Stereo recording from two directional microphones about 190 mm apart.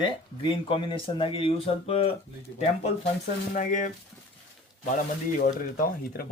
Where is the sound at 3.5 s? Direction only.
45° left (ahead or behind).